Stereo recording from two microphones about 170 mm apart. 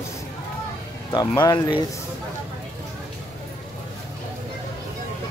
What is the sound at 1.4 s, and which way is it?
Speech, 25° left (ahead or behind).